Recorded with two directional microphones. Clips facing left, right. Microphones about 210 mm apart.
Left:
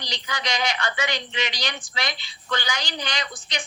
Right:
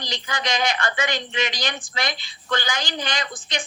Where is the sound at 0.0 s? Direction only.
50° right (ahead or behind).